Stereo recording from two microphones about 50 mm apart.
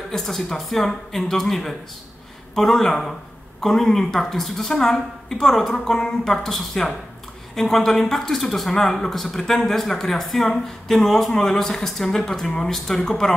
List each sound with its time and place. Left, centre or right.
0.1 s speech: centre